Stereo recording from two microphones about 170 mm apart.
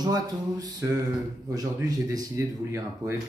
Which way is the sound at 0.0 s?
20° right (ahead or behind).